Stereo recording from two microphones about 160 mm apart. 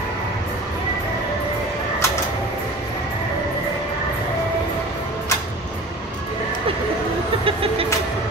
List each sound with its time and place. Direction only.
7.4 s vehicle: 35° right (ahead or behind)